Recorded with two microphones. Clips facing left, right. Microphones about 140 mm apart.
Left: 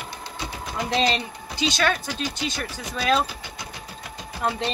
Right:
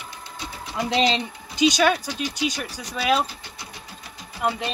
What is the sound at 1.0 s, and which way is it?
Speech, 20° right (ahead or behind).